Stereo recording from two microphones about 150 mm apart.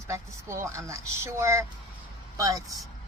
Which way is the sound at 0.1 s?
20° right (ahead or behind).